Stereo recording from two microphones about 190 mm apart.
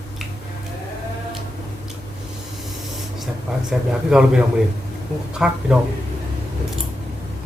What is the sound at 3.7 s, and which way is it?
Speech, 5° right (ahead or behind).